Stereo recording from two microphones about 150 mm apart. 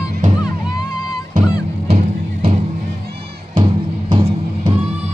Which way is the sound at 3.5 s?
30° right (ahead or behind).